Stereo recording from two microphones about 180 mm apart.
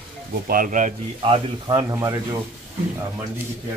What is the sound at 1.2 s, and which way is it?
Speech, 30° right (ahead or behind).